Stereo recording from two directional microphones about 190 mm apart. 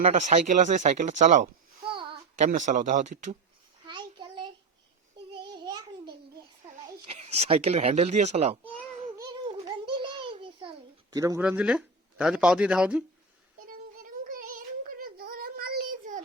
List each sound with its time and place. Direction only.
0.0 s speech: 40° right (ahead or behind)
1.9 s a sound: 25° right (ahead or behind)
2.4 s speech: 40° right (ahead or behind)
3.8 s a sound: 25° right (ahead or behind)
5.3 s child singing: 25° right (ahead or behind)
7.1 s speech: 35° right (ahead or behind)
9.1 s a sound: 20° right (ahead or behind)
11.1 s speech: 20° right (ahead or behind)
11.4 s speech: 5° right (ahead or behind)
13.7 s child singing: 45° right (ahead or behind)